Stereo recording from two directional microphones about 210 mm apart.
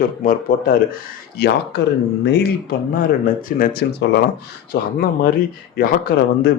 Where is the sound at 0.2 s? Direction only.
45° left (ahead or behind).